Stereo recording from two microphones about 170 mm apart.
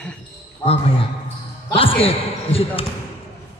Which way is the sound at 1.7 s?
35° left (ahead or behind).